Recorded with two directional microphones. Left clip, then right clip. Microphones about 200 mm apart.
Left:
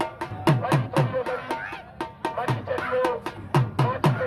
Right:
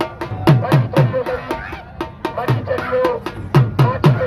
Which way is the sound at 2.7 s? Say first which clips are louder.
Right 8 dB; 10° right (ahead or behind).